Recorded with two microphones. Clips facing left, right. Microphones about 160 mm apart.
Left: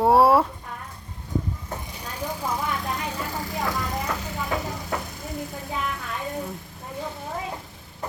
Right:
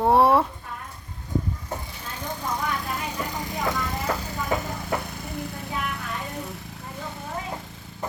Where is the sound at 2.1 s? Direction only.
10° left (ahead or behind).